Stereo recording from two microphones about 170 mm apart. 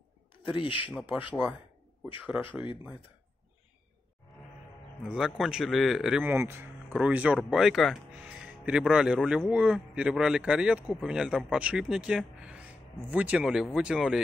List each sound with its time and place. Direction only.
0.6 s speech: 30° left (ahead or behind)
0.8 s speech: 10° right (ahead or behind)
5.0 s speech: 5° right (ahead or behind)
6.3 s speech: 15° right (ahead or behind)